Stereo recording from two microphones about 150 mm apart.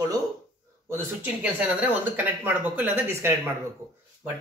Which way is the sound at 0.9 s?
10° right (ahead or behind).